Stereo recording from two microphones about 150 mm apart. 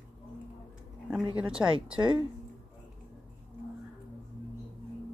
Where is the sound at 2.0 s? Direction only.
30° right (ahead or behind).